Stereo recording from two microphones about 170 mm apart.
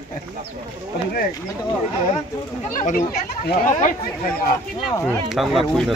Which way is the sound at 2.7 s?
50° left (ahead or behind).